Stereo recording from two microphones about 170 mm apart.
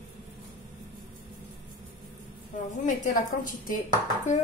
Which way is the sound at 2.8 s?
50° left (ahead or behind).